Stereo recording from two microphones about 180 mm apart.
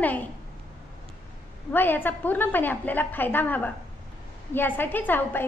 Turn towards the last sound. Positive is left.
turn(degrees=10)  # may be behind; listen again after turning